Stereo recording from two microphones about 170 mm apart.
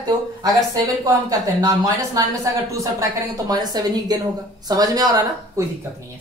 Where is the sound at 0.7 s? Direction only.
20° right (ahead or behind).